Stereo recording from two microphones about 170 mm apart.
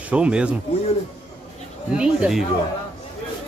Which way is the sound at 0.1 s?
5° right (ahead or behind).